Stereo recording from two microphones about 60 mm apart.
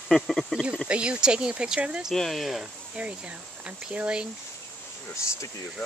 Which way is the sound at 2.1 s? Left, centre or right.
Centre.